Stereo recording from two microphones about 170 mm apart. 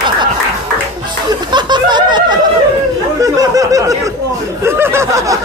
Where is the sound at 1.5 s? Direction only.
25° right (ahead or behind).